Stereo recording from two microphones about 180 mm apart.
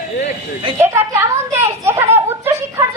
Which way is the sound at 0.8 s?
15° right (ahead or behind).